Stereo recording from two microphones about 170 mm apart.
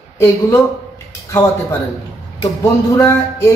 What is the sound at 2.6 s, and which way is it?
Speech, 20° left (ahead or behind).